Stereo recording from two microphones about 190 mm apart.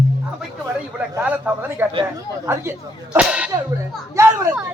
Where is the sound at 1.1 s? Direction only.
10° right (ahead or behind).